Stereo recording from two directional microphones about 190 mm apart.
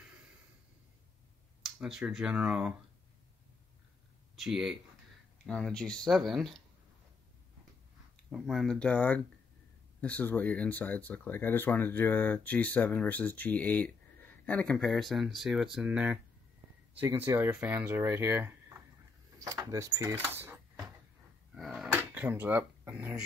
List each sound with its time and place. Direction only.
1.6 s speech: 5° right (ahead or behind)
4.4 s speech: centre (ahead or behind)
8.3 s speech: centre (ahead or behind); by 20.2 s 15° right (ahead or behind)
20.2 s a sound: 10° right (ahead or behind)